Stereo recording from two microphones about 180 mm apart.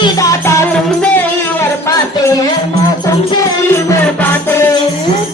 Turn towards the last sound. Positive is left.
turn(degrees=10)  # may be behind; listen again after turning